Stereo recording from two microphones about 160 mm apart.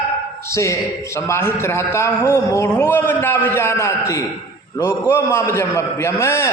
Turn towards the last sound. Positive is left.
turn(degrees=15)  # may be behind; listen again after turning